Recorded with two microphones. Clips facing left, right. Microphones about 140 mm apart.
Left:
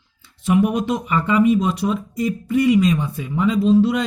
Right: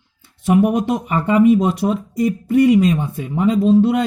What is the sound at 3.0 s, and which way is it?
Speech, 35° right (ahead or behind).